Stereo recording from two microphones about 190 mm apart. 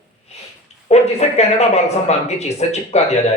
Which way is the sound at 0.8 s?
35° left (ahead or behind).